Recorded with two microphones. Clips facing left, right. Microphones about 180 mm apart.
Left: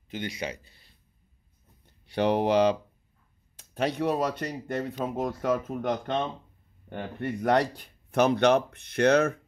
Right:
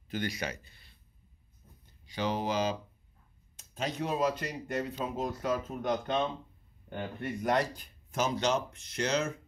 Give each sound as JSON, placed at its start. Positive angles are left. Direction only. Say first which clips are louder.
{"t": 0.1, "sound": "speech", "louder": "left 1 dB", "side_deg": 25}
{"t": 2.0, "sound": "speech", "louder": "left 8 dB", "side_deg": 65}
{"t": 7.2, "sound": "speech", "louder": "left 6 dB", "side_deg": 65}